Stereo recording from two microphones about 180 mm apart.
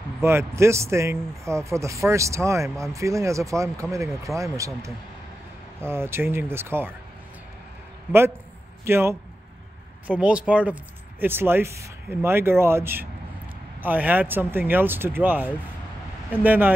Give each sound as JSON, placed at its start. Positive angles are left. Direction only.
{"t": 0.2, "sound": "speech", "side_deg": -15}
{"t": 8.8, "sound": "a man's voice", "side_deg": -15}